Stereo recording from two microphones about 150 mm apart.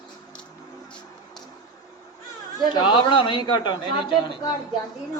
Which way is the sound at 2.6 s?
30° left (ahead or behind).